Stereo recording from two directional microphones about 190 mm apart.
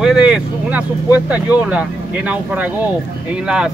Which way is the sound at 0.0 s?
5° right (ahead or behind).